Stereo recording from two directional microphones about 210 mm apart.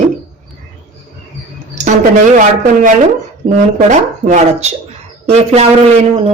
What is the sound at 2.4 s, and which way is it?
Speech, 40° right (ahead or behind).